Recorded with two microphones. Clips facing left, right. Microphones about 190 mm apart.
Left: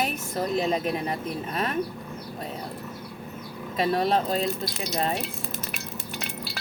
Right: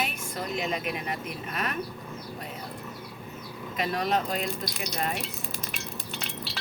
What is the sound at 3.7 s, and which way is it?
Speech, 30° left (ahead or behind).